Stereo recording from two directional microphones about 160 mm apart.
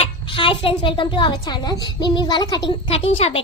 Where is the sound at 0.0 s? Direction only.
30° left (ahead or behind).